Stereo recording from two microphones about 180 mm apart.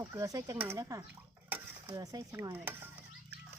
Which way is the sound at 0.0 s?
15° right (ahead or behind).